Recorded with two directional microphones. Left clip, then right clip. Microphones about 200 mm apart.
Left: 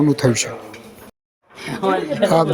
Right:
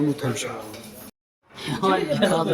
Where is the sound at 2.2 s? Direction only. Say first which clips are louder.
Left 9 dB; 20° left (ahead or behind).